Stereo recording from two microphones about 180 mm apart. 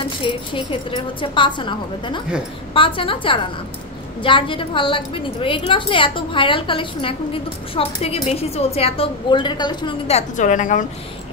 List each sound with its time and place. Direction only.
0.2 s a woman's voice: 25° left (ahead or behind); by 10.9 s 45° left (ahead or behind)